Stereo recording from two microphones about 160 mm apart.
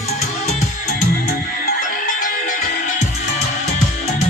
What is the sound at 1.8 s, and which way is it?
Music, 55° left (ahead or behind).